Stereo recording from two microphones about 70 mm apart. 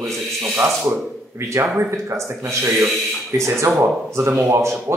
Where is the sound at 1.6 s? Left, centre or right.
Right.